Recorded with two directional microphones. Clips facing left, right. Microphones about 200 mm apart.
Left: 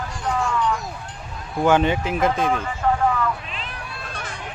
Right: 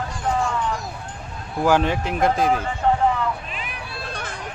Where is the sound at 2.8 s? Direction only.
30° right (ahead or behind).